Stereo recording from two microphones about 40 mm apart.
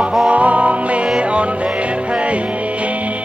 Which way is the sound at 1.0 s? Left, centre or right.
Right.